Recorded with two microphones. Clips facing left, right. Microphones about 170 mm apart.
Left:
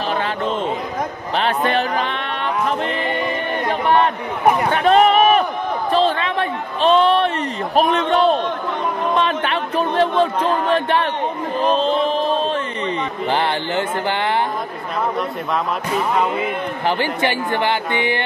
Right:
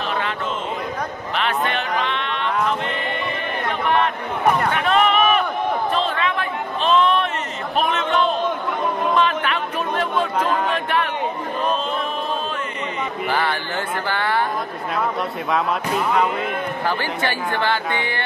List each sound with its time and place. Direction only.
1.3 s a sound: 35° left (ahead or behind)
3.6 s chatter: 35° left (ahead or behind)
4.7 s run: 35° left (ahead or behind)
5.9 s a sound: 30° left (ahead or behind)
11.6 s mantra: 30° left (ahead or behind)
13.3 s speech: 20° left (ahead or behind)
16.1 s speech: centre (ahead or behind)
16.8 s speech: 15° left (ahead or behind)